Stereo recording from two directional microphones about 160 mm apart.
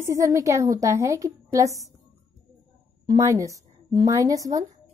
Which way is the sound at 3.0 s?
20° right (ahead or behind).